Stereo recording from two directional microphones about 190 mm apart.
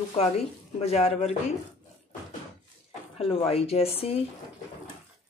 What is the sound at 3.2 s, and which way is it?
Speech, 30° left (ahead or behind).